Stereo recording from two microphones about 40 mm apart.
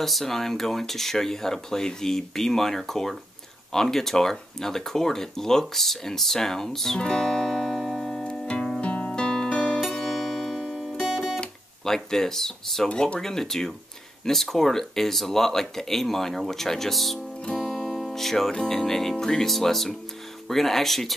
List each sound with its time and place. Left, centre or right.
0.0 s speech: centre
7.0 s music: centre
8.2 s music: left
8.8 s music: left
9.1 s music: centre
9.9 s music: centre
11.8 s speech: centre
12.8 s speech: centre
17.6 s music: centre
18.5 s speech: centre